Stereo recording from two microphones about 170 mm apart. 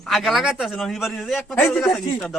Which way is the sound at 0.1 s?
Centre (ahead or behind).